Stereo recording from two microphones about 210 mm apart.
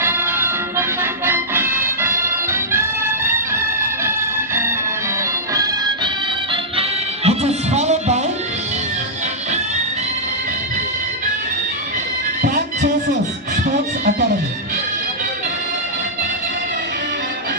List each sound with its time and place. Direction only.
0.0 s music: 10° right (ahead or behind)
7.3 s music: 30° right (ahead or behind)
12.4 s music: 50° right (ahead or behind)